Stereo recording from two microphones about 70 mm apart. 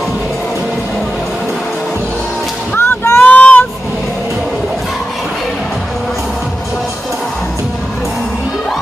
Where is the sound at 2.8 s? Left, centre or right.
Left.